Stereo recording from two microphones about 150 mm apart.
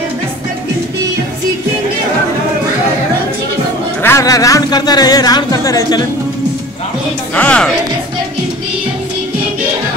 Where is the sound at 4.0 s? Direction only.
20° left (ahead or behind).